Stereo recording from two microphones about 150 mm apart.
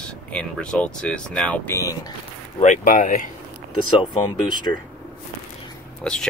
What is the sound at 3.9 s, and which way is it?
Speech, 30° left (ahead or behind).